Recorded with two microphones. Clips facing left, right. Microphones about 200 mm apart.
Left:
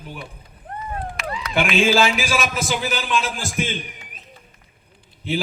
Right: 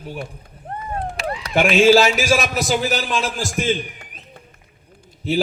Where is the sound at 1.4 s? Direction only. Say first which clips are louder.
Right 4 dB; 40° right (ahead or behind).